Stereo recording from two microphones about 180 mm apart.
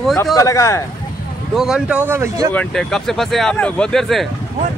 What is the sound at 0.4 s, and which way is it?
Speech, 15° left (ahead or behind).